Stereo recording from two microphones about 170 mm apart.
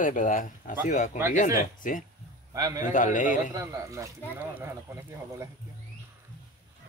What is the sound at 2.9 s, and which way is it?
Speech, 50° left (ahead or behind).